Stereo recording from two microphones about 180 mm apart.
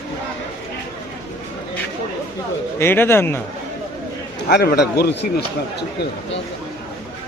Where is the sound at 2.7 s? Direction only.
10° left (ahead or behind).